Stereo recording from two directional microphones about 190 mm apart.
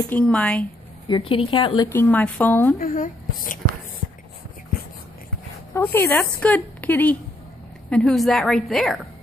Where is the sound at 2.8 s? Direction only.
45° left (ahead or behind).